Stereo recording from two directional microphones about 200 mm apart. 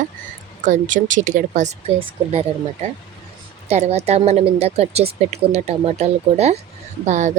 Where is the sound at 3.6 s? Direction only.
35° right (ahead or behind).